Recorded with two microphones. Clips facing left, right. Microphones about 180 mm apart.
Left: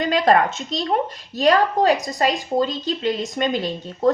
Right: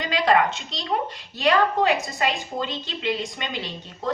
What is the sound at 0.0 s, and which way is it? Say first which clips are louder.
A woman's voice: left 4 dB; 45° left (ahead or behind).